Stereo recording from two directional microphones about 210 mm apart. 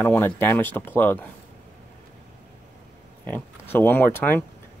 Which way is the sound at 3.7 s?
10° left (ahead or behind).